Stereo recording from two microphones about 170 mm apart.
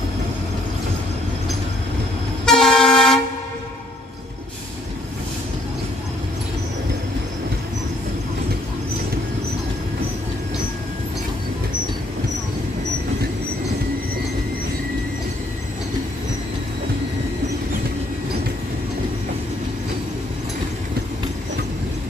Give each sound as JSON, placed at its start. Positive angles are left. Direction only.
{"t": 2.4, "sound": "train", "side_deg": 5}